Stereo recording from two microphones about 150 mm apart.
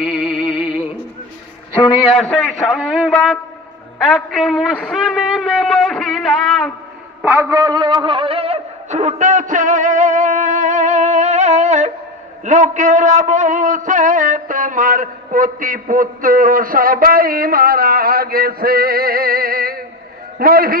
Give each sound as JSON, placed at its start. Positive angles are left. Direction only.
{"t": 0.0, "sound": "music", "side_deg": -5}
{"t": 2.1, "sound": "a man's voice", "side_deg": 0}
{"t": 7.2, "sound": "a man's voice", "side_deg": -15}